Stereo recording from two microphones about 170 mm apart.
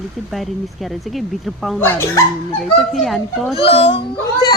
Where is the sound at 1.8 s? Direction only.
10° left (ahead or behind).